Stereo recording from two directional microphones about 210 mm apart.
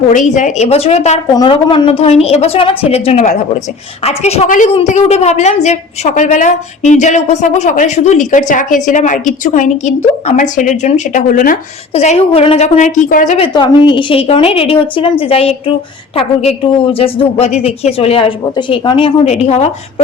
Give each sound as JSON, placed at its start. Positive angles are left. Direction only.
{"t": 0.1, "sound": "a woman's voice", "side_deg": 35}
{"t": 11.9, "sound": "a woman's voice", "side_deg": 30}
{"t": 13.5, "sound": "a woman's voice", "side_deg": 20}